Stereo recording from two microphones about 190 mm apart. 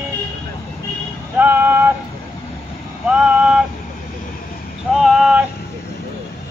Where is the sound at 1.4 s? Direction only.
10° right (ahead or behind).